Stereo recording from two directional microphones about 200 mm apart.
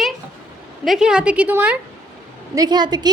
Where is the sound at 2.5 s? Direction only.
20° right (ahead or behind).